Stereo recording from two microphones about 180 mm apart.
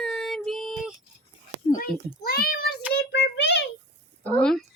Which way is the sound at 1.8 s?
55° left (ahead or behind).